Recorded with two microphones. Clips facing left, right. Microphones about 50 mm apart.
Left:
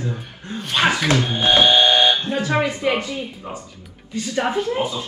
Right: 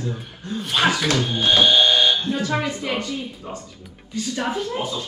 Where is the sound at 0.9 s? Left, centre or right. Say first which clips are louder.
Left 2 dB; centre.